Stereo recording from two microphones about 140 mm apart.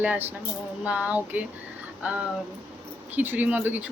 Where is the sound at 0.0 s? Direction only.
15° right (ahead or behind).